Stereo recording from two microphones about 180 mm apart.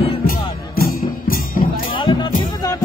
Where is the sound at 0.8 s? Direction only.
50° left (ahead or behind).